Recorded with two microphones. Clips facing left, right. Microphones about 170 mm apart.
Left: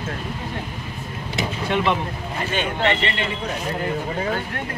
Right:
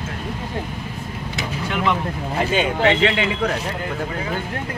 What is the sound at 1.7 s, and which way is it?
Speech, 25° left (ahead or behind).